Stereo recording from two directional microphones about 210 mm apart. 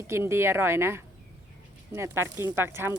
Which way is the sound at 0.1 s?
10° right (ahead or behind).